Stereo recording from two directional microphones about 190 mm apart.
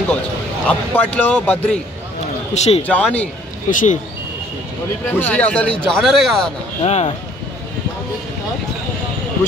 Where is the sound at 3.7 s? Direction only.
45° left (ahead or behind).